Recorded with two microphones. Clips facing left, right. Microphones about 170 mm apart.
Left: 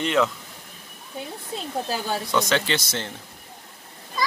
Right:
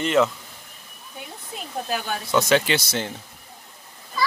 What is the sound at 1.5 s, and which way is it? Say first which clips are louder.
Speech: left 4 dB; 30° left (ahead or behind).